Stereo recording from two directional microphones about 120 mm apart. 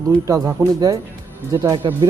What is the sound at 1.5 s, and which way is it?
Speech, 40° right (ahead or behind).